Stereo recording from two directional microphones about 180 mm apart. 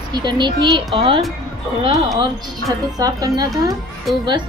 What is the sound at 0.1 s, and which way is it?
Speech, 25° right (ahead or behind).